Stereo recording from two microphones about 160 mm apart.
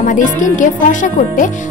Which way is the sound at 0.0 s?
55° left (ahead or behind).